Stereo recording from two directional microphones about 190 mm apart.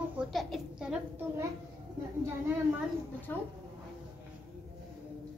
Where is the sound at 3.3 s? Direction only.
10° left (ahead or behind).